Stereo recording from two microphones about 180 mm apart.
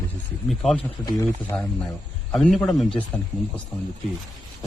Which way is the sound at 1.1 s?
15° left (ahead or behind).